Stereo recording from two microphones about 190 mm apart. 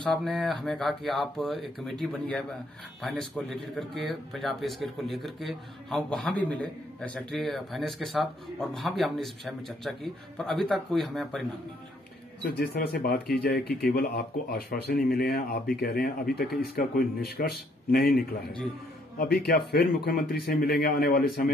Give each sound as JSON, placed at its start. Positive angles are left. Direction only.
{"t": 0.0, "sound": "speech", "side_deg": 0}
{"t": 12.4, "sound": "speech", "side_deg": 55}